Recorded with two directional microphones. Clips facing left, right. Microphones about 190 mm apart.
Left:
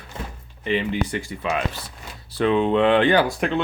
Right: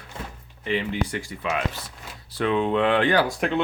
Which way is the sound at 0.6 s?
20° left (ahead or behind).